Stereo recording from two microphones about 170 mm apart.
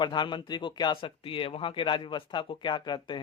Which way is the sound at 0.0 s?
25° left (ahead or behind).